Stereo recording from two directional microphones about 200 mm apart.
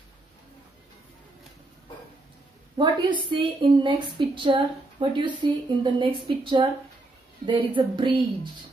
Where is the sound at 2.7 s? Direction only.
25° right (ahead or behind).